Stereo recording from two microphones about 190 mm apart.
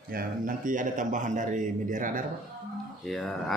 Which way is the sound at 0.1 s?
45° right (ahead or behind).